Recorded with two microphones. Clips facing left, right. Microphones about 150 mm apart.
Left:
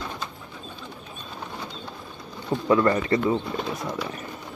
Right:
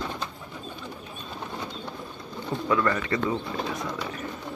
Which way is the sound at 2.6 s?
30° left (ahead or behind).